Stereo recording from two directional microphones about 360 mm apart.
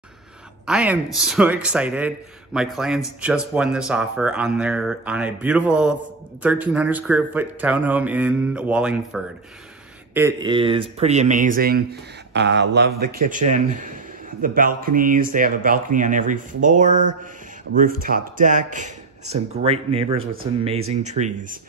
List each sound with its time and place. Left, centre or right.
0.7 s a man's voice: centre